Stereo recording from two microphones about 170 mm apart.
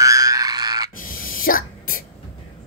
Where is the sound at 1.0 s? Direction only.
55° left (ahead or behind).